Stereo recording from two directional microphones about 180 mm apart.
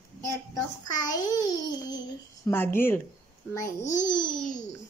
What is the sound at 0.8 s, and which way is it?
A child's voice, 20° left (ahead or behind).